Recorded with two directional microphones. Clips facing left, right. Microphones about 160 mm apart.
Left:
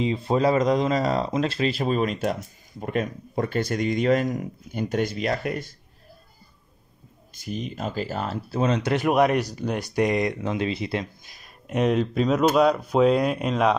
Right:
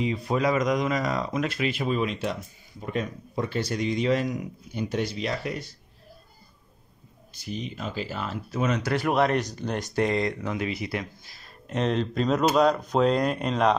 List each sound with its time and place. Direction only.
0.0 s speech: 25° left (ahead or behind); by 5.8 s 50° left (ahead or behind)
7.3 s speech: 45° left (ahead or behind); by 13.7 s 5° left (ahead or behind)